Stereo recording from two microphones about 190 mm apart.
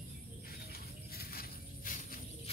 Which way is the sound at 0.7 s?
55° left (ahead or behind).